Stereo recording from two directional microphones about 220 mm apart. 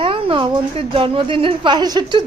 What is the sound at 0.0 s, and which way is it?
A woman's voice, 25° right (ahead or behind).